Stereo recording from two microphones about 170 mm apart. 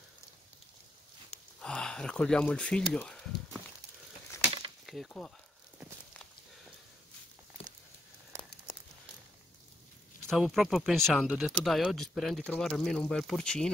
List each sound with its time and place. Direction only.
1.6 s speech: 5° left (ahead or behind)
4.8 s speech: centre (ahead or behind)
8.3 s crumpling: 15° right (ahead or behind)
10.3 s speech: centre (ahead or behind)